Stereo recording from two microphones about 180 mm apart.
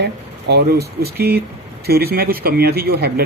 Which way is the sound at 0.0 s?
65° right (ahead or behind).